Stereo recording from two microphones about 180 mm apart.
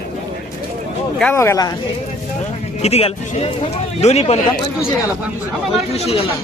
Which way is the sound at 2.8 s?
35° left (ahead or behind).